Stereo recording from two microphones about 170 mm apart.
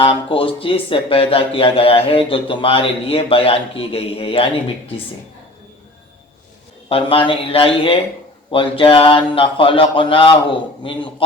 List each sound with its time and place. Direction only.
0.0 s speech: 30° left (ahead or behind)
6.8 s speech: 30° left (ahead or behind)